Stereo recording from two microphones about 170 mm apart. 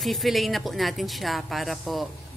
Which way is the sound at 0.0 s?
Centre (ahead or behind).